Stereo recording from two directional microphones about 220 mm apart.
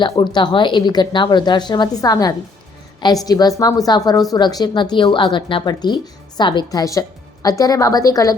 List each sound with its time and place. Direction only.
0.0 s a woman's voice: 20° left (ahead or behind)